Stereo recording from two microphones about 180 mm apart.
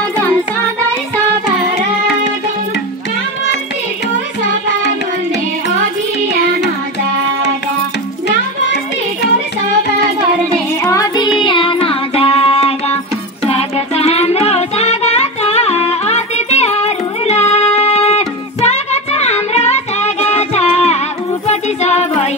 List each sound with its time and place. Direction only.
10.8 s music: 20° left (ahead or behind); by 22.3 s 40° left (ahead or behind)